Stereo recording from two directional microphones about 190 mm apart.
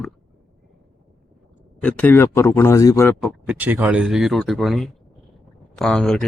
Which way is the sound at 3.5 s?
10° right (ahead or behind).